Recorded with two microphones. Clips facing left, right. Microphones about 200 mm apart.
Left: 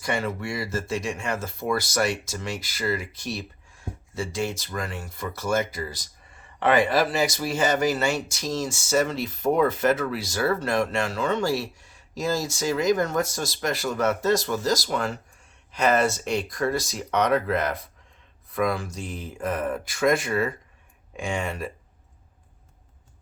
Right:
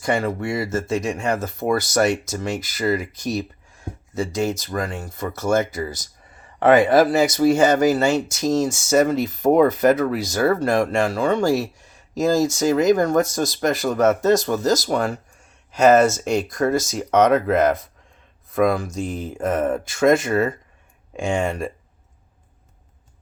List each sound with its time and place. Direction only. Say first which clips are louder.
0.0 s speech: right 6 dB; 55° right (ahead or behind)
2.0 s speech: right 6 dB; 20° right (ahead or behind)
2.7 s speech: right 6 dB; 40° right (ahead or behind)